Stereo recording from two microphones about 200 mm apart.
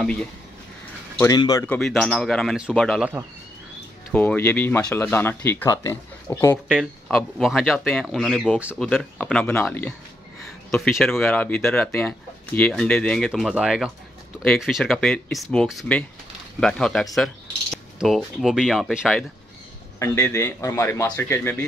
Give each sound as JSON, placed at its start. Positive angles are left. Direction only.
{"t": 0.0, "sound": "speech", "side_deg": 5}
{"t": 1.2, "sound": "speech", "side_deg": 20}
{"t": 1.7, "sound": "speech", "side_deg": 5}
{"t": 4.1, "sound": "speech", "side_deg": 10}
{"t": 6.7, "sound": "speech", "side_deg": 0}
{"t": 20.0, "sound": "speech", "side_deg": 15}